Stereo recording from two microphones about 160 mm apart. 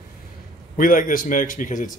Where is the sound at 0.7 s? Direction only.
60° left (ahead or behind).